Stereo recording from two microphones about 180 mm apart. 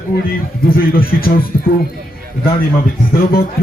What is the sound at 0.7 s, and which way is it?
Speech, 55° left (ahead or behind).